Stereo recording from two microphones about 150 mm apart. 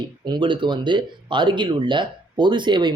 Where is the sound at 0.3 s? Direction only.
30° right (ahead or behind).